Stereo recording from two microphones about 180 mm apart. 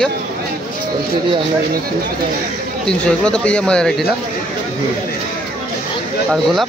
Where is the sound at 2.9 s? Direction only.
5° left (ahead or behind).